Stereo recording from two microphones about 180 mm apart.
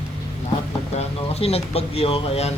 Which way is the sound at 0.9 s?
35° left (ahead or behind).